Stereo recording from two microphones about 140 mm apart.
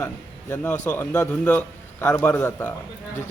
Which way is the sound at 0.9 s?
10° left (ahead or behind).